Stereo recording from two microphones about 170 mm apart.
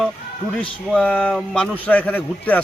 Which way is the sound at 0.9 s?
5° left (ahead or behind).